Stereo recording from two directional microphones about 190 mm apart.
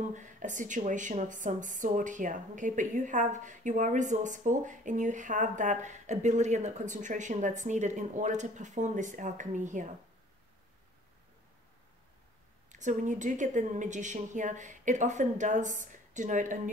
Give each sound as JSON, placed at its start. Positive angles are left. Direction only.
{"t": 0.0, "sound": "speech", "side_deg": -40}
{"t": 12.7, "sound": "speech", "side_deg": -40}